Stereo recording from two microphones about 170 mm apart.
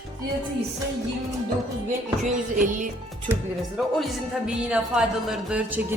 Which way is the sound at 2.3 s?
50° right (ahead or behind).